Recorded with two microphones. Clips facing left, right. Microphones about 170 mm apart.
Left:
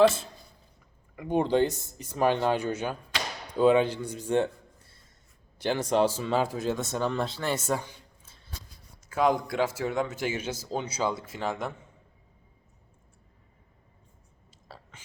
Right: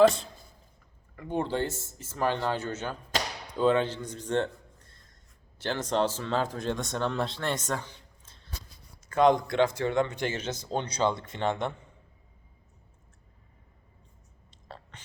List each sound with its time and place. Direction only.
1.1 s a man's voice: 15° left (ahead or behind)
14.7 s whispering: 5° left (ahead or behind)